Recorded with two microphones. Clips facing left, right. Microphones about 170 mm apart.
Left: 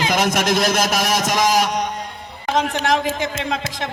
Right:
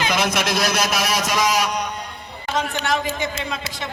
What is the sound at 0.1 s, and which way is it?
Speech, 45° left (ahead or behind).